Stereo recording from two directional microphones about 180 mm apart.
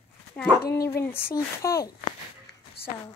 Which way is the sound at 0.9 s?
15° left (ahead or behind).